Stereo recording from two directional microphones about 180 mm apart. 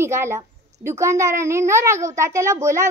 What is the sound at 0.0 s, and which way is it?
A child's voice, 15° right (ahead or behind).